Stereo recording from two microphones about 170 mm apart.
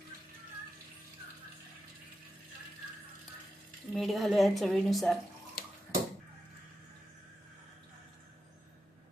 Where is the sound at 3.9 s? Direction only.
Centre (ahead or behind).